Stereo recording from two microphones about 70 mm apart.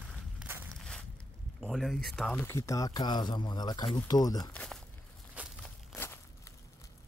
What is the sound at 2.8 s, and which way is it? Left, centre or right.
Speech, left.